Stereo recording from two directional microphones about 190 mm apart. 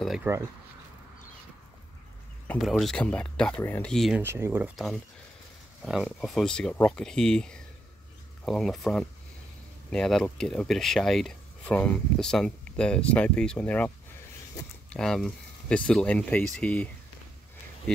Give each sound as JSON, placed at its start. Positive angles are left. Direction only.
{"t": 0.0, "sound": "a sound", "side_deg": 0}
{"t": 2.4, "sound": "speech", "side_deg": 5}
{"t": 4.2, "sound": "speech", "side_deg": -10}
{"t": 6.0, "sound": "speech", "side_deg": 0}